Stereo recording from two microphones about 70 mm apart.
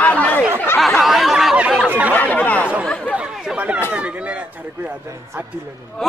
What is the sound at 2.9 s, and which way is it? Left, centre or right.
Speech, centre.